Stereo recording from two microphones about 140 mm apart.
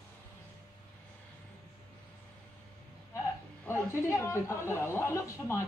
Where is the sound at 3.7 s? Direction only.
20° left (ahead or behind).